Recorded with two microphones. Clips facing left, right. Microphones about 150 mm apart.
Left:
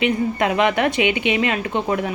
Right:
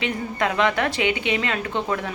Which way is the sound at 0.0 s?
20° left (ahead or behind).